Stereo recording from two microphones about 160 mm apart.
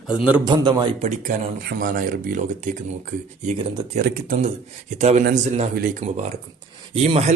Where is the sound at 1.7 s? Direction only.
60° right (ahead or behind).